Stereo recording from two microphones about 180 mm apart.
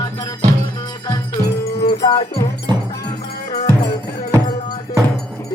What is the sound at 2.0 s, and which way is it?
Music, 20° left (ahead or behind).